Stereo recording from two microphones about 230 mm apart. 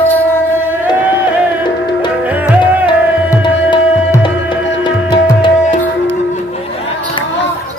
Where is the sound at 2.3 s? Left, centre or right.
Centre.